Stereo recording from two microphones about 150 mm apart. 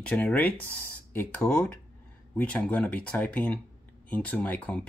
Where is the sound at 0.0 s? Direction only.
10° left (ahead or behind).